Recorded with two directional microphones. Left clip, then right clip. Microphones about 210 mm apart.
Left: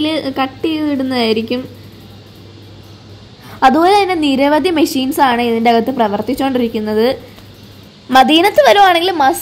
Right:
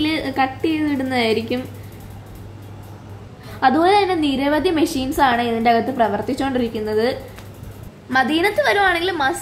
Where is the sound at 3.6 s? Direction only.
35° left (ahead or behind).